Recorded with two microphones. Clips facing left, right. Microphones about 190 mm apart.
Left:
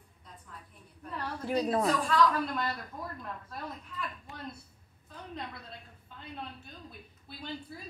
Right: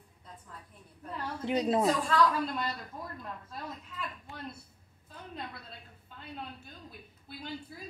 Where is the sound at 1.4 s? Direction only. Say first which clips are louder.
Right 1 dB; 20° right (ahead or behind).